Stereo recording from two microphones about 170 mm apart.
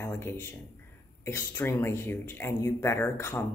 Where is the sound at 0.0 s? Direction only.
15° left (ahead or behind).